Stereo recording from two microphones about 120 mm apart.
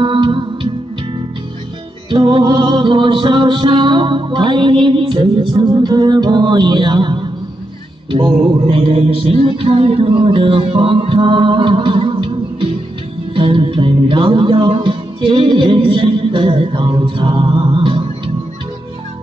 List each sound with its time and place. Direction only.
0.0 s music: 40° right (ahead or behind)
2.0 s music: 45° right (ahead or behind)
8.6 s music: 50° right (ahead or behind)